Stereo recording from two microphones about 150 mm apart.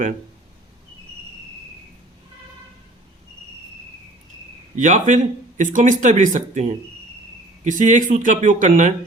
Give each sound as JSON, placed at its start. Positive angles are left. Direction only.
{"t": 4.8, "sound": "speech", "side_deg": -55}